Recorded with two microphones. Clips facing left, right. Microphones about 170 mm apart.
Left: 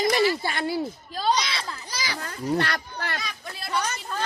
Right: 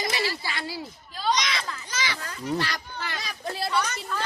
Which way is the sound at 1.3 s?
30° left (ahead or behind).